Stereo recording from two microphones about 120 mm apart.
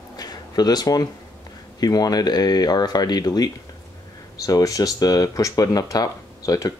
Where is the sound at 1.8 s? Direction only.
30° left (ahead or behind).